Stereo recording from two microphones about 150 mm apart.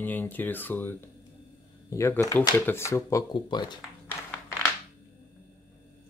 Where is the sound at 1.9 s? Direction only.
20° left (ahead or behind).